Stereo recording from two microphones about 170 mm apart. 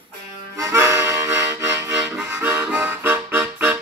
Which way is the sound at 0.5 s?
15° right (ahead or behind).